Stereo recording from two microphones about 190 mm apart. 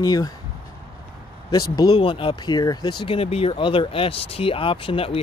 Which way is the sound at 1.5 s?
20° left (ahead or behind).